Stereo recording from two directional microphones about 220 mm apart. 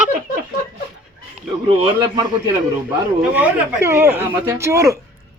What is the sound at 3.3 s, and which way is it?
Speech, 10° right (ahead or behind).